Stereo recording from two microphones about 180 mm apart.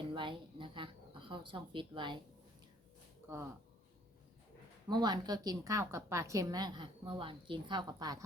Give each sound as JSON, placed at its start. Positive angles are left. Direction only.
{"t": 0.1, "sound": "a woman's voice", "side_deg": -25}
{"t": 3.2, "sound": "speech", "side_deg": -15}
{"t": 4.9, "sound": "a woman's voice", "side_deg": -20}